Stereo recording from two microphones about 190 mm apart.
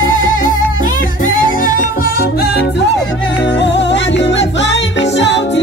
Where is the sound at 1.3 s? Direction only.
45° left (ahead or behind).